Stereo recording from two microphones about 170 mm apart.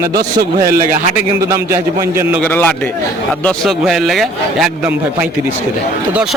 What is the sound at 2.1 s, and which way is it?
Speech, 15° right (ahead or behind).